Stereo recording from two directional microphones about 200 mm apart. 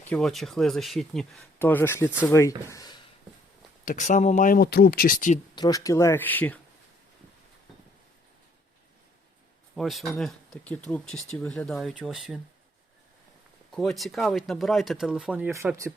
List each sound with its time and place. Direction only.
0.0 s speech: 5° left (ahead or behind)
3.8 s speech: 40° left (ahead or behind)
5.5 s speech: 20° left (ahead or behind)
9.7 s speech: centre (ahead or behind)
13.7 s speech: centre (ahead or behind); by 15.9 s 15° right (ahead or behind)